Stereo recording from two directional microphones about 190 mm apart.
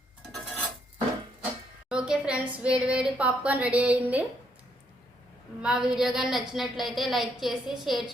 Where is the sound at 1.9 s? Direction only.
5° right (ahead or behind).